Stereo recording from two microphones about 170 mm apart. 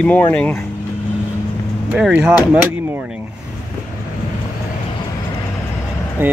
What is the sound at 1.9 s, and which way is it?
Speech, 5° right (ahead or behind).